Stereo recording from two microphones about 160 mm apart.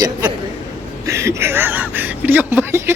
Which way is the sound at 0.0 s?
25° right (ahead or behind).